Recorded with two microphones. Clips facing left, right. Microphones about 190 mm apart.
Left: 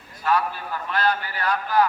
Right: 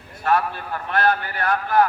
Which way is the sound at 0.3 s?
55° right (ahead or behind).